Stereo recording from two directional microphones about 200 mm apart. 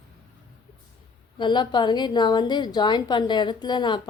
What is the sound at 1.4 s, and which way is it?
A woman's voice, 20° left (ahead or behind).